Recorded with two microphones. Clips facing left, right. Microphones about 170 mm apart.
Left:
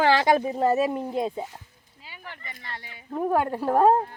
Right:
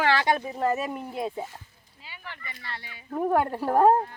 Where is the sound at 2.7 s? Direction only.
45° left (ahead or behind).